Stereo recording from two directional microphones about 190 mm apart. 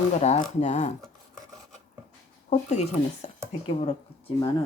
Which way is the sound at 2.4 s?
35° left (ahead or behind).